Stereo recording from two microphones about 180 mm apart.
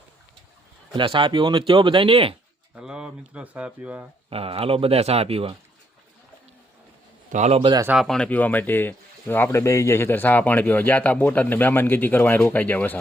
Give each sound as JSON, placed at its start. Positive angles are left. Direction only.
{"t": 0.9, "sound": "speech", "side_deg": -30}
{"t": 2.7, "sound": "speech", "side_deg": -5}
{"t": 4.3, "sound": "speech", "side_deg": -30}
{"t": 7.3, "sound": "speech", "side_deg": -35}
{"t": 7.9, "sound": "speech", "side_deg": 0}